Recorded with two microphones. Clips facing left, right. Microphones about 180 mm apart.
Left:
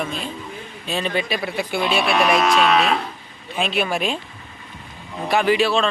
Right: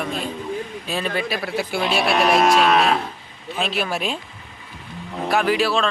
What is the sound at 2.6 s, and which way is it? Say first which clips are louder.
Speech: right 1 dB; 50° right (ahead or behind).